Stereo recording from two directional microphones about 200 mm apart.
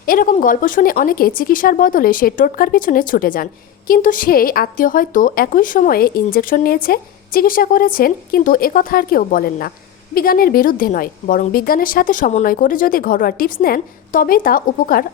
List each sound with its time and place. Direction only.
0.0 s speech: 45° left (ahead or behind)